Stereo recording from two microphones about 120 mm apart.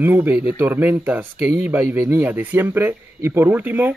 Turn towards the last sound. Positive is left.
turn(degrees=-15)  # may be behind; listen again after turning